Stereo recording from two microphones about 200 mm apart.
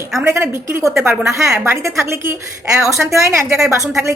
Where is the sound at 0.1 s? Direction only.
5° right (ahead or behind).